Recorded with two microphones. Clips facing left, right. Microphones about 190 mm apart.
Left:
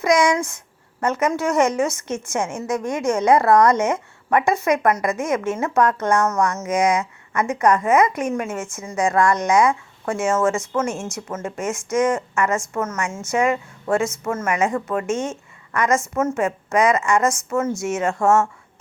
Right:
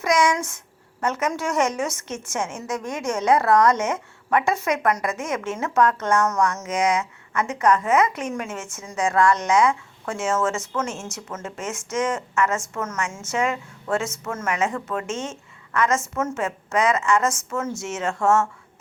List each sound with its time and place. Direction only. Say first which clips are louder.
0.0 s a woman's voice: left 3 dB; 10° left (ahead or behind)